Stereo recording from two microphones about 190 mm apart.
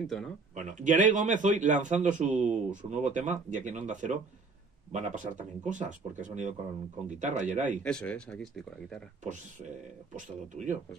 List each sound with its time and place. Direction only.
0.0 s speech: centre (ahead or behind)
0.6 s a man's voice: 40° right (ahead or behind)
7.8 s speech: 5° left (ahead or behind)
9.2 s a man's voice: 40° right (ahead or behind)